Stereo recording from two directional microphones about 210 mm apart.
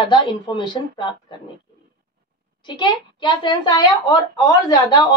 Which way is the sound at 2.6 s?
20° left (ahead or behind).